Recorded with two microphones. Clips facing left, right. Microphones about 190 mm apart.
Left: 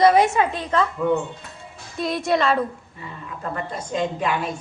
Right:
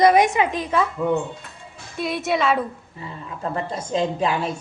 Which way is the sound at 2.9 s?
30° right (ahead or behind).